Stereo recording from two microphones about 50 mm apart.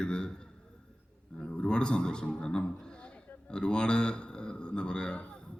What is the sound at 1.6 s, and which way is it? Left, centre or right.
A man's voice, centre.